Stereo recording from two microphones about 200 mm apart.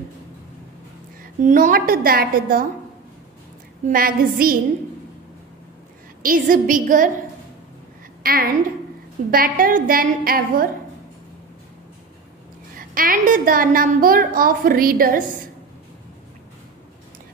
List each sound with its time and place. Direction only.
1.4 s a woman's voice: 40° right (ahead or behind)
3.9 s a woman's voice: 45° right (ahead or behind)
6.2 s a woman's voice: 45° right (ahead or behind)
8.2 s a woman's voice: 45° right (ahead or behind)
12.7 s a woman's voice: 45° right (ahead or behind)